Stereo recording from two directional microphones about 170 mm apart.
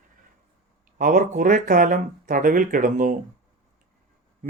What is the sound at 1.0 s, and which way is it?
Speech, 50° right (ahead or behind).